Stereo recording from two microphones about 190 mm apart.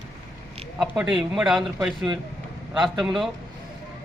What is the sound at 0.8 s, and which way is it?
A man's voice, centre (ahead or behind).